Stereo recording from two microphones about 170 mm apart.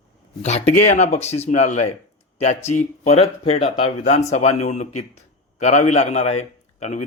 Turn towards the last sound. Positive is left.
turn(degrees=40)  # may be behind; listen again after turning